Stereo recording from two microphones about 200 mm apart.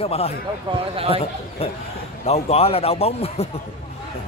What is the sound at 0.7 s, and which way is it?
Speech, 30° right (ahead or behind).